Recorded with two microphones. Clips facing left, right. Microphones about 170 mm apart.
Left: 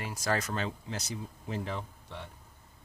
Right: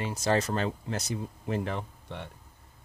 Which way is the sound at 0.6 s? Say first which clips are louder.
Right 5 dB; 45° right (ahead or behind).